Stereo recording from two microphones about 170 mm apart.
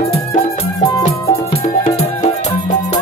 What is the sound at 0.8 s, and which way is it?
Music, 20° left (ahead or behind).